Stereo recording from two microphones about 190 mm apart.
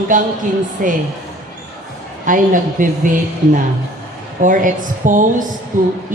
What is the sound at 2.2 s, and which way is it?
Speech, 45° right (ahead or behind).